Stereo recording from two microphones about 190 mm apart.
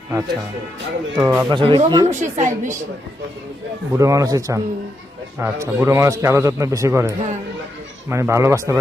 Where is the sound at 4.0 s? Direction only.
15° right (ahead or behind).